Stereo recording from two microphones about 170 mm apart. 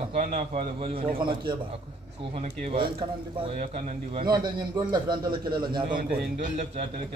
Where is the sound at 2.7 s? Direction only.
30° right (ahead or behind).